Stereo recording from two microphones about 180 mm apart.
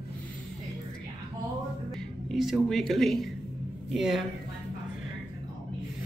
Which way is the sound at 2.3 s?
Centre (ahead or behind).